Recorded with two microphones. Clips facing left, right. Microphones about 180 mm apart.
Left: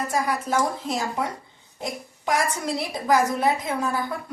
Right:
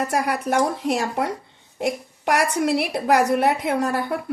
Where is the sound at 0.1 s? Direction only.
65° right (ahead or behind).